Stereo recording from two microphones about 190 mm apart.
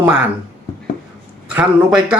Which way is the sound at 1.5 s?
5° right (ahead or behind).